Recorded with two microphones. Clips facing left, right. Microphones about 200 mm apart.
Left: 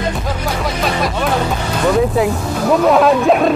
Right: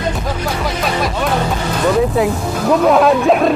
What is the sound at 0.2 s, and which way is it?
Music, centre (ahead or behind).